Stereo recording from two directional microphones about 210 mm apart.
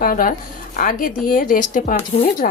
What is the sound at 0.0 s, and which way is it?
Speech, 40° left (ahead or behind).